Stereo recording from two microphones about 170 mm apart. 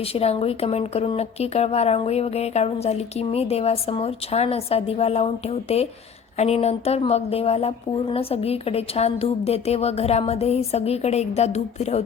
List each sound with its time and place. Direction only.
0.1 s a woman's voice: 35° left (ahead or behind)